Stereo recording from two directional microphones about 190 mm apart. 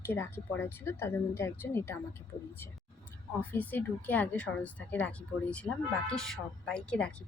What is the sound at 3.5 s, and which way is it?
A woman's voice, 10° left (ahead or behind).